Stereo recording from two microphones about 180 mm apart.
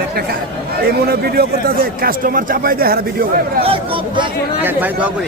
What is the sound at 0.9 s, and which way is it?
A man's voice, 60° right (ahead or behind).